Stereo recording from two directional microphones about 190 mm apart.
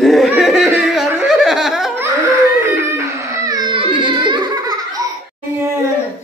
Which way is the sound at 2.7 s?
15° right (ahead or behind).